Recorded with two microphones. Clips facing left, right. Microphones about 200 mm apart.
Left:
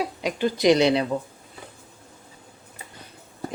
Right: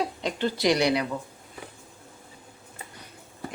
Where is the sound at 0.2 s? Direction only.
10° left (ahead or behind).